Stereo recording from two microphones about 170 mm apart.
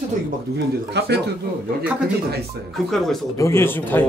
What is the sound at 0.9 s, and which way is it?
Speech, 80° right.